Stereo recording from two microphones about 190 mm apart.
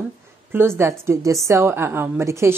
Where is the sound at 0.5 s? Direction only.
10° right (ahead or behind).